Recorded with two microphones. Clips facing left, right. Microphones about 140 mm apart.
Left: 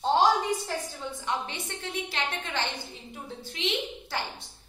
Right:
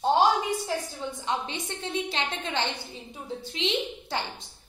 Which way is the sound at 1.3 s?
20° right (ahead or behind).